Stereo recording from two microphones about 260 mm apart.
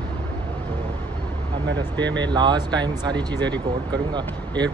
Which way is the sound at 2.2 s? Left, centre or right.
Centre.